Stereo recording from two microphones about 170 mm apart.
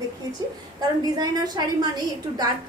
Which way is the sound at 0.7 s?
25° right (ahead or behind).